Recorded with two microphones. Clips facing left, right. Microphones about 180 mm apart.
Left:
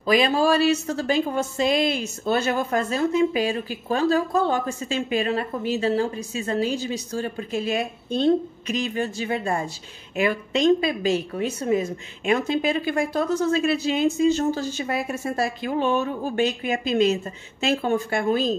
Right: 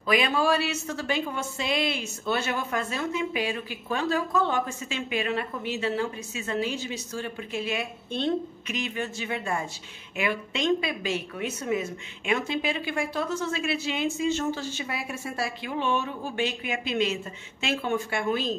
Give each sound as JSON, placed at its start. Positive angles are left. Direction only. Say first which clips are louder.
{"t": 0.0, "sound": "a woman's voice", "louder": "left 5 dB", "side_deg": 35}